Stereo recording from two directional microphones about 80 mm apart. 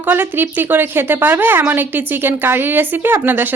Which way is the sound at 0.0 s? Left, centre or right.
Right.